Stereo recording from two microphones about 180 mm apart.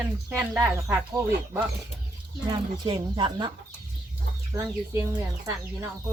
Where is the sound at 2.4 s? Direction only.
25° right (ahead or behind).